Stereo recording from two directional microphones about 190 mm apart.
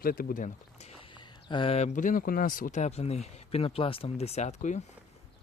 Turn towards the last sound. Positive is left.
turn(degrees=40)  # may be behind; listen again after turning